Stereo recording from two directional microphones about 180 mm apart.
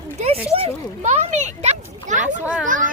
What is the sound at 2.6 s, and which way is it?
Speech, 45° right (ahead or behind).